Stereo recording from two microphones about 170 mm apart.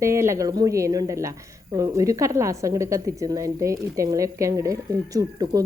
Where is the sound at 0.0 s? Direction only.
15° right (ahead or behind).